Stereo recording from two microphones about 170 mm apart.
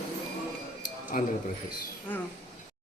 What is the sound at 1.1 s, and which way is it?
Speech, 55° left (ahead or behind).